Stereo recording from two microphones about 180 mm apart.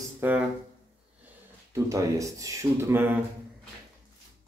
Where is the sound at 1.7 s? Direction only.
15° right (ahead or behind).